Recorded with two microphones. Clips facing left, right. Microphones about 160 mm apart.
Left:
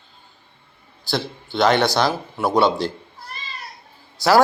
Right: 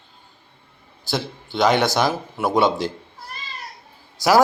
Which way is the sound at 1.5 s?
15° right (ahead or behind).